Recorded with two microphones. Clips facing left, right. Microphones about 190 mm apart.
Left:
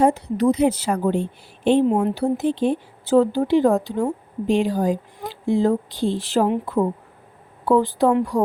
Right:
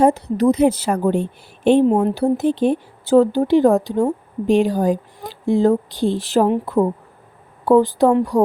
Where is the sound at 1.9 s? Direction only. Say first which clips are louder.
Right 3 dB; 40° right (ahead or behind).